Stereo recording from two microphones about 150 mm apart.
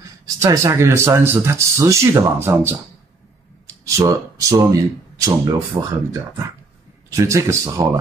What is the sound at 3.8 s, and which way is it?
Speech, 20° right (ahead or behind).